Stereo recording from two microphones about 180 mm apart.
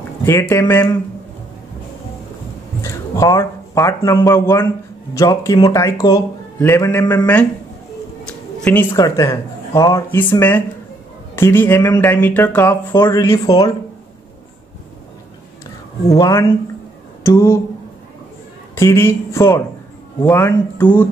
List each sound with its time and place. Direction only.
0.2 s a man's voice: 15° left (ahead or behind)
2.8 s a man's voice: 15° left (ahead or behind)
8.3 s a sound: 5° left (ahead or behind)
8.9 s a man's voice: 15° left (ahead or behind)
16.1 s a man's voice: 15° left (ahead or behind)
18.8 s a man's voice: 15° left (ahead or behind)